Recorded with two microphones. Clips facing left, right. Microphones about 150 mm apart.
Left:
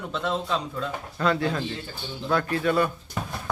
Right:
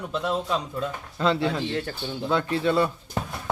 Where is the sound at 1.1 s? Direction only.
25° right (ahead or behind).